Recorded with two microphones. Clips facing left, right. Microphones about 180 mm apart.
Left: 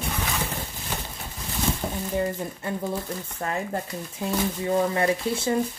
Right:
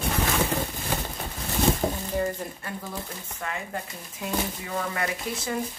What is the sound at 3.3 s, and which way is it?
Speech, 35° left (ahead or behind).